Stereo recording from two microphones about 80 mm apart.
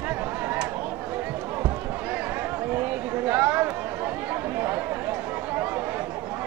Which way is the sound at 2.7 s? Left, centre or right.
Right.